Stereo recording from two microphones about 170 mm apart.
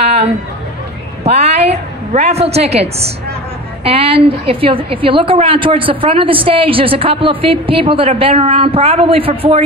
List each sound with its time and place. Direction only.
1.2 s a woman's voice: 40° right (ahead or behind)